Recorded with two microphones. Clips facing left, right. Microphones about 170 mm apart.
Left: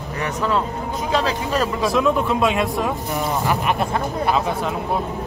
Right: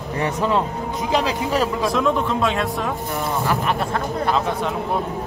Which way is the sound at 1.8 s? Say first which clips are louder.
Left 1 dB; 5° left (ahead or behind).